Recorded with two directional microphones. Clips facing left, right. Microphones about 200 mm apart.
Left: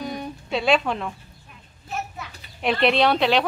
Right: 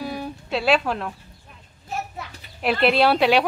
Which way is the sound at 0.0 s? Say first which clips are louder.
Right 1 dB; 5° right (ahead or behind).